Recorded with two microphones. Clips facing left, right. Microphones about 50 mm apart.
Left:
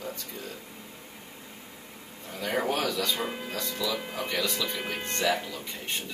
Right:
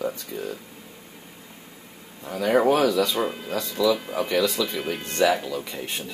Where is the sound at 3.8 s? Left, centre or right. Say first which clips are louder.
Right 11 dB; right.